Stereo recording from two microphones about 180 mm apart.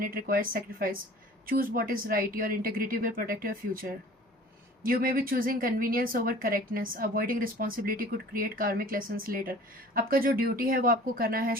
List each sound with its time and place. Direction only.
0.0 s a woman's voice: 55° right (ahead or behind)